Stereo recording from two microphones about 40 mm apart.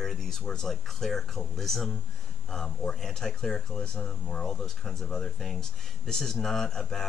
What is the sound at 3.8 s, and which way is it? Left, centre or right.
Speech, left.